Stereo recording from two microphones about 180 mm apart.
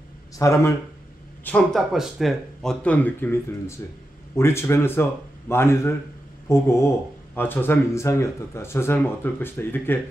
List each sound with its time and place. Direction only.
0.4 s speech: 15° left (ahead or behind)
1.4 s speech: 5° left (ahead or behind)